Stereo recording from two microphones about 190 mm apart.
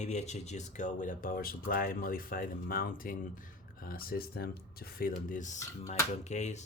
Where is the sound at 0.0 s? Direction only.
35° left (ahead or behind).